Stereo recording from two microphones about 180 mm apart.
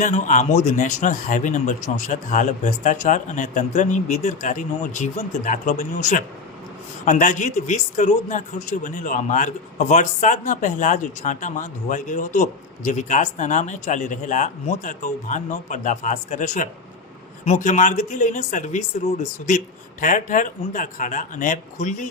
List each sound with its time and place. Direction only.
0.0 s a man's voice: 45° left (ahead or behind)